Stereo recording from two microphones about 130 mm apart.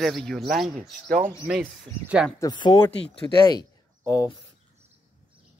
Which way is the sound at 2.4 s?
35° left (ahead or behind).